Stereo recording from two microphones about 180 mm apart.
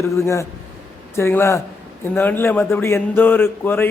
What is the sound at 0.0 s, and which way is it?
Speech, 15° left (ahead or behind).